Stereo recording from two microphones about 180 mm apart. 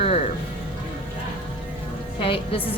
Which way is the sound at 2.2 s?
30° left (ahead or behind).